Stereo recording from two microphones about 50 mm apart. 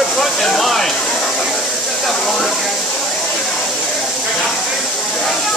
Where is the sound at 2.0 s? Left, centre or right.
Centre.